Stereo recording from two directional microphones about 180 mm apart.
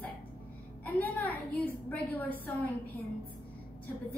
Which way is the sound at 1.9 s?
10° left (ahead or behind).